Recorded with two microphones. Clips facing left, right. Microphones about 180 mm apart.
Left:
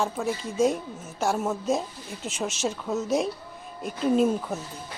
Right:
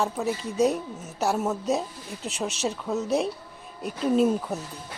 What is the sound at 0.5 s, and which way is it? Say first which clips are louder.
Speech: even; 35° right (ahead or behind).